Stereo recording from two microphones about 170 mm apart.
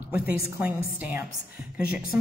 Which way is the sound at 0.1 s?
10° right (ahead or behind).